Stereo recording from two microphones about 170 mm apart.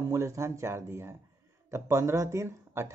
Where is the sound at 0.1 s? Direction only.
15° right (ahead or behind).